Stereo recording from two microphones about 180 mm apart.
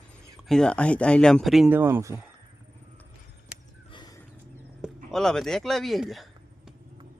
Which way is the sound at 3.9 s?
25° left (ahead or behind).